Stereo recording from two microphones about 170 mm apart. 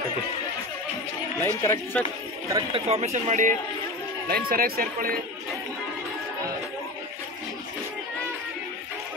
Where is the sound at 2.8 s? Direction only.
40° right (ahead or behind).